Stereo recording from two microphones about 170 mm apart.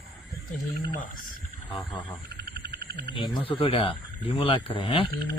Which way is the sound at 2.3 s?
70° right (ahead or behind).